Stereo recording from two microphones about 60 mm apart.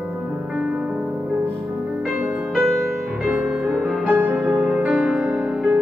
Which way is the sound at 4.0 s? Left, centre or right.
Right.